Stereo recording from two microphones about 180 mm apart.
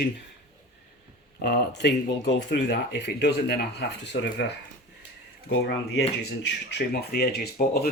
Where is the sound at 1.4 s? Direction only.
65° left (ahead or behind).